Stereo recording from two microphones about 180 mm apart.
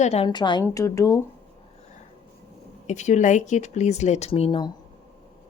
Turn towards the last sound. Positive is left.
turn(degrees=30)  # may be behind; listen again after turning